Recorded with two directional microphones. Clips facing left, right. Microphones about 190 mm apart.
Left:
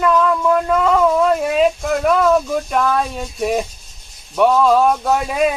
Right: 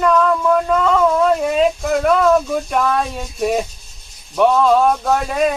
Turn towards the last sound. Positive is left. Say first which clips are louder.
# even
turn(degrees=5)  # may be behind; listen again after turning